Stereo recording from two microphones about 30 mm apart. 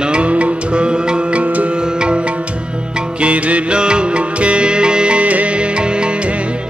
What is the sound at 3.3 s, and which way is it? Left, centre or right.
Music, right.